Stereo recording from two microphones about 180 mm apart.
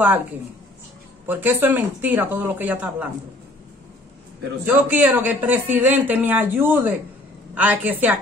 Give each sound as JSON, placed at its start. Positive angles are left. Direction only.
{"t": 1.2, "sound": "speech", "side_deg": -10}
{"t": 4.6, "sound": "speech", "side_deg": -10}